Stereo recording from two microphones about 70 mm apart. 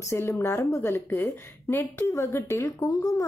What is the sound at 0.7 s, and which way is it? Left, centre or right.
A woman's voice, left.